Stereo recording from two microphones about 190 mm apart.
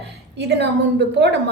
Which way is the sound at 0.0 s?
65° right (ahead or behind).